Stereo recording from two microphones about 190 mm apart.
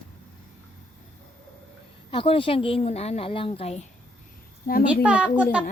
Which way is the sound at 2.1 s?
25° left (ahead or behind).